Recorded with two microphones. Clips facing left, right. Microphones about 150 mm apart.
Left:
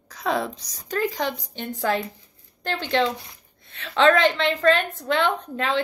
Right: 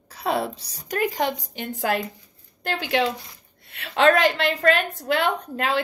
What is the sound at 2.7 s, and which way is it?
Speech, 10° right (ahead or behind).